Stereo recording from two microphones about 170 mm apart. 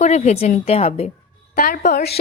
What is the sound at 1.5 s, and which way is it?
Speech, 55° left (ahead or behind).